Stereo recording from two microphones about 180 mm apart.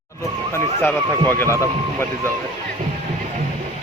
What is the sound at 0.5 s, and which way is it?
Speech, 10° left (ahead or behind).